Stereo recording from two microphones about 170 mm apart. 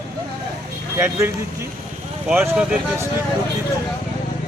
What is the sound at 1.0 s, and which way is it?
Speech, 15° right (ahead or behind).